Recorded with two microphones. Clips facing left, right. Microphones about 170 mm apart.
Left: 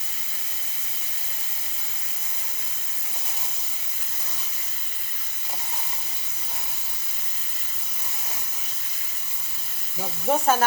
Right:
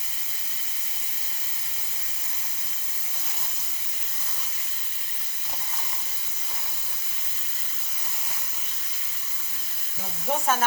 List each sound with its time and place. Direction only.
10.2 s frying: 45° left (ahead or behind)